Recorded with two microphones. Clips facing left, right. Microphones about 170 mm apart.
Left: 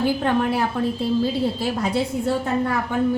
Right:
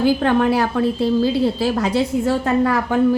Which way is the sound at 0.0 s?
80° right.